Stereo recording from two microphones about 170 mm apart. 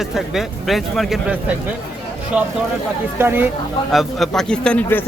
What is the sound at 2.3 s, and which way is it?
A man's voice, 5° right (ahead or behind).